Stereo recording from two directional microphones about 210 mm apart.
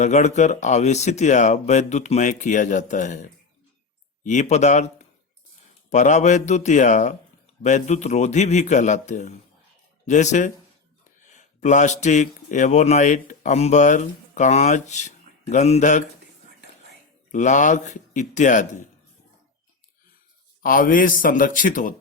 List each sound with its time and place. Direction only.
0.0 s a man's voice: 35° left (ahead or behind)
17.3 s speech: 35° left (ahead or behind)
20.6 s speech: 40° left (ahead or behind)